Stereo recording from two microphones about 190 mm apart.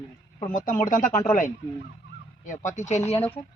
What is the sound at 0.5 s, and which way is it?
Speech, 45° left (ahead or behind).